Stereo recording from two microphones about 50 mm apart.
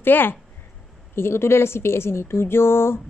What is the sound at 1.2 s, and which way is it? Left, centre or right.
A woman's voice, left.